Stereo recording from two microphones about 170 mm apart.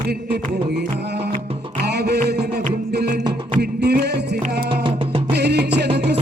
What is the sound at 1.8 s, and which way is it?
Music, 75° right (ahead or behind).